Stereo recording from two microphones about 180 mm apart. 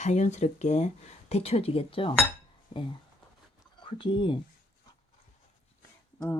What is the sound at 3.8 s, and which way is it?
Speech, 25° left (ahead or behind).